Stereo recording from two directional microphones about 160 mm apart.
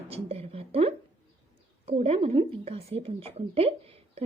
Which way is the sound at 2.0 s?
35° right (ahead or behind).